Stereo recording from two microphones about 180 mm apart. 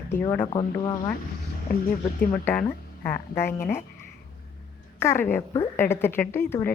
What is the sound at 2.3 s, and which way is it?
A woman's voice, 5° left (ahead or behind).